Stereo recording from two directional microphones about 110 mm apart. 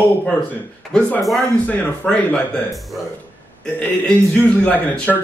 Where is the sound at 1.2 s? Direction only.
Centre (ahead or behind).